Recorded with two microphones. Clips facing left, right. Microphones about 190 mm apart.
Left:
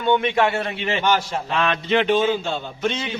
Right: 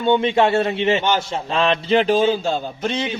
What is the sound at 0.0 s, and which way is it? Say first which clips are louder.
A man's voice: right 3 dB; 25° right (ahead or behind).